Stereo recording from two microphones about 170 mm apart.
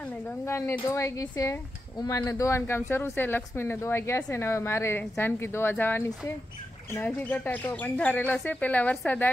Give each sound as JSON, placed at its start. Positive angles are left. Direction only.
{"t": 0.0, "sound": "a woman's voice", "side_deg": 10}